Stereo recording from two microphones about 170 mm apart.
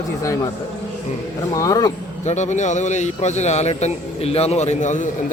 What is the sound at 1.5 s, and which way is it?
Speech, 20° left (ahead or behind).